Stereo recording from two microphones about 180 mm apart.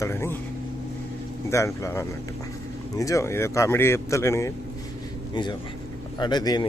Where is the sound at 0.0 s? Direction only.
15° left (ahead or behind).